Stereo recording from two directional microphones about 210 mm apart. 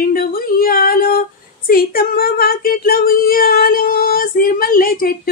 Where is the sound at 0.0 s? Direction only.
45° left (ahead or behind).